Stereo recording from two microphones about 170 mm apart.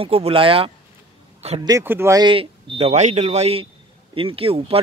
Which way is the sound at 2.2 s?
30° right (ahead or behind).